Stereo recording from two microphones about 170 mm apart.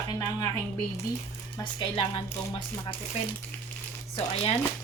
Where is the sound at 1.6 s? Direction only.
25° left (ahead or behind).